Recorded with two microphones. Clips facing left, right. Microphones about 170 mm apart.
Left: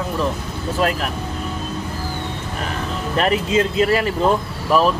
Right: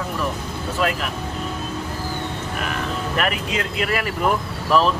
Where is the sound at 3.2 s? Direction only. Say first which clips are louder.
Left 8 dB; 30° left (ahead or behind).